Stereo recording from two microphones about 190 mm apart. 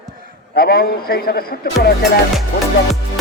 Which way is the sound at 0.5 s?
55° left (ahead or behind).